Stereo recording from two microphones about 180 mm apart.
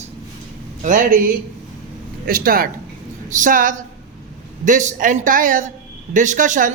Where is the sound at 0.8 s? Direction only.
45° right (ahead or behind).